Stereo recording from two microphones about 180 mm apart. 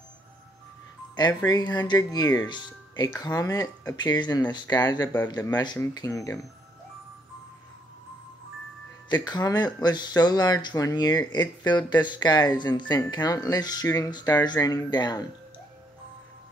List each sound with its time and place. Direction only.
1.1 s speech: 20° left (ahead or behind)
9.1 s speech: 25° left (ahead or behind)